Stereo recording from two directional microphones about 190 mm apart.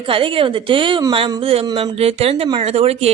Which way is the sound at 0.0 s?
25° right (ahead or behind).